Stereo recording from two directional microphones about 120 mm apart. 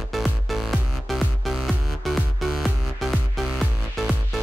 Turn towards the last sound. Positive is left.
turn(degrees=0)  # may be behind; listen again after turning